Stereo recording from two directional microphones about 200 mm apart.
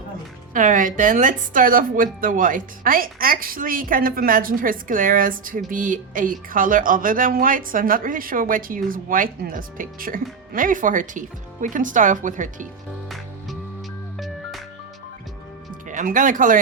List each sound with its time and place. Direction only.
0.5 s speech: 40° right (ahead or behind)
15.9 s speech: 40° right (ahead or behind)